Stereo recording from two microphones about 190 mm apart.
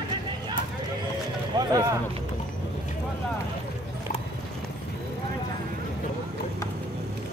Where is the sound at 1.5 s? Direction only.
20° right (ahead or behind).